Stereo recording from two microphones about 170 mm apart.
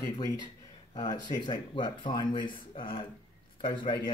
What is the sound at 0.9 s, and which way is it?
Speech, 25° left (ahead or behind).